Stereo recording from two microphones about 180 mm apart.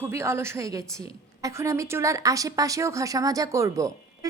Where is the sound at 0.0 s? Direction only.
15° right (ahead or behind).